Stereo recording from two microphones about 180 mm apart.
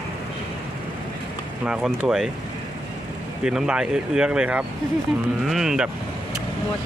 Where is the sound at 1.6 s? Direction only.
5° right (ahead or behind).